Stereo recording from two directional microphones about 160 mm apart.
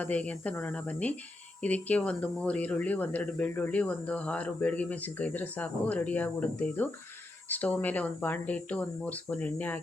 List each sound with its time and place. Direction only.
0.0 s speech: 10° left (ahead or behind)